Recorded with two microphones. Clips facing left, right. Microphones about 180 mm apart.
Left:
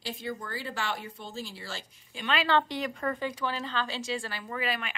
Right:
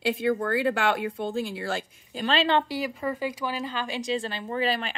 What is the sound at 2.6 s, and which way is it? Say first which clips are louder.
Speech: right 3 dB; 5° right (ahead or behind).